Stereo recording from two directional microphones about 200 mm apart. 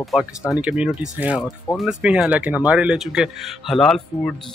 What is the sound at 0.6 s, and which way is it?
Speech, 5° right (ahead or behind).